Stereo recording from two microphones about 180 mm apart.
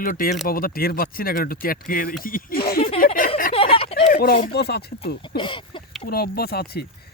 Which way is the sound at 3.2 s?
50° left (ahead or behind).